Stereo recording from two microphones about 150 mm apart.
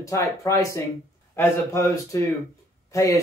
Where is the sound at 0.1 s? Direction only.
20° left (ahead or behind).